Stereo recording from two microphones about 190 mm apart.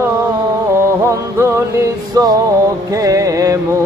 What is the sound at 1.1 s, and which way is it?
Mantra, 15° right (ahead or behind).